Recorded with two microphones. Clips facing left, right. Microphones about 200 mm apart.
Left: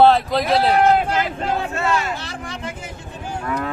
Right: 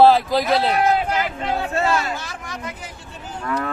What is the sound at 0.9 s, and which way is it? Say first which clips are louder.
Vehicle: left 2 dB; 50° left (ahead or behind).